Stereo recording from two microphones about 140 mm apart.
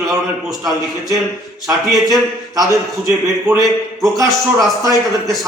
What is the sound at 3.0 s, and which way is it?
Speech, centre (ahead or behind).